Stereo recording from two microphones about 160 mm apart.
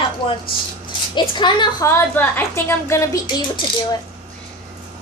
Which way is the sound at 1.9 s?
15° left (ahead or behind).